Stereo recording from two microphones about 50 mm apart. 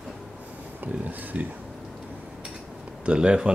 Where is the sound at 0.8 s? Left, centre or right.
Right.